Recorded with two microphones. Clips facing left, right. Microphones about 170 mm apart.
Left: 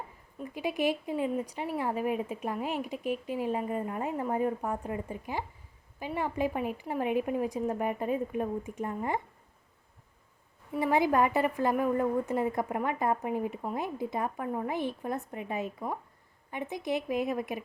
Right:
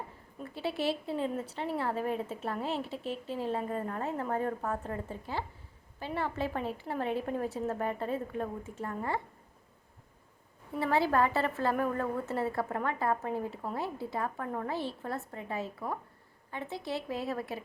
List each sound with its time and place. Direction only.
0.4 s a woman's voice: 15° left (ahead or behind)
10.8 s a woman's voice: 15° left (ahead or behind)